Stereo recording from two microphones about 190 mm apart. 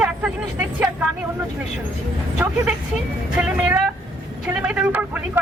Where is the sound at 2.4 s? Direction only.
10° right (ahead or behind).